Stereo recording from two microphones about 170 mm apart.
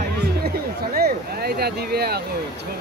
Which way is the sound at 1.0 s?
65° right (ahead or behind).